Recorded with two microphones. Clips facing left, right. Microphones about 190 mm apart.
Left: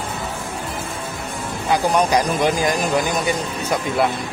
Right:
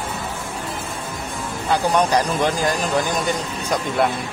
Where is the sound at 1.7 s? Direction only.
10° left (ahead or behind).